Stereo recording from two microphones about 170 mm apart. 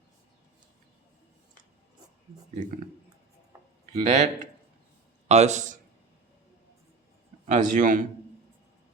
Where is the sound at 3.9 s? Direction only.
45° right (ahead or behind).